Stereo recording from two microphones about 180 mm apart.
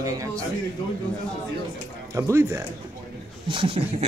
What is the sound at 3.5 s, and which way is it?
Speech, 30° right (ahead or behind).